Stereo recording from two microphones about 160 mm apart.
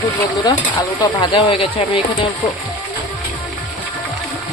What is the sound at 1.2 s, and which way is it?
Speech, 35° left (ahead or behind).